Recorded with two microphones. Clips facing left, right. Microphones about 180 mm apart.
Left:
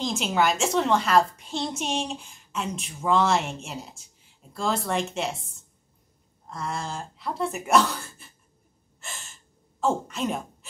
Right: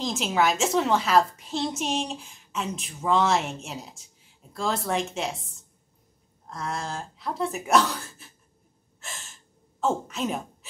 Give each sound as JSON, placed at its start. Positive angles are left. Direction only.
{"t": 0.0, "sound": "a woman's voice", "side_deg": 0}
{"t": 9.0, "sound": "gasp", "side_deg": 0}